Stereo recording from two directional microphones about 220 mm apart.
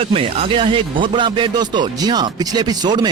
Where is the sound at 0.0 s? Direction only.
25° right (ahead or behind).